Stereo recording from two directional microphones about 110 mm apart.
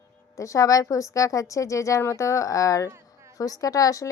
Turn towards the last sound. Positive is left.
turn(degrees=30)  # may be behind; listen again after turning